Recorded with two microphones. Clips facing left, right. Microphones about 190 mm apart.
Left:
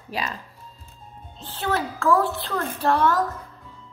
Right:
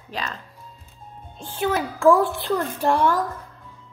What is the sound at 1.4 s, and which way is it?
A child's voice, 10° right (ahead or behind).